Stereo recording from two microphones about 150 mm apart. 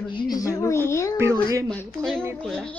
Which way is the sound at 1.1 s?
20° right (ahead or behind).